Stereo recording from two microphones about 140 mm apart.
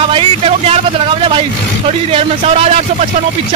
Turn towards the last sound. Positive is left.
turn(degrees=-45)  # may be behind; listen again after turning